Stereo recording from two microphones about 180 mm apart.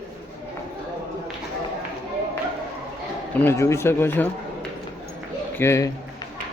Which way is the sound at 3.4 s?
15° left (ahead or behind).